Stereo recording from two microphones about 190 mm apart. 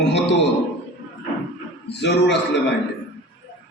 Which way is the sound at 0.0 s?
65° left (ahead or behind).